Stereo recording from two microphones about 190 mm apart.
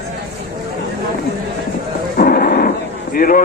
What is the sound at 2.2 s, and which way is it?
Cattle, 50° left (ahead or behind).